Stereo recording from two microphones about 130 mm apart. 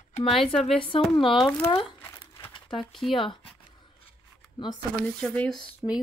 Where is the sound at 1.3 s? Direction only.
5° left (ahead or behind).